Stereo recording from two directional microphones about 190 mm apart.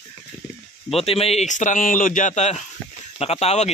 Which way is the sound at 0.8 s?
30° left (ahead or behind).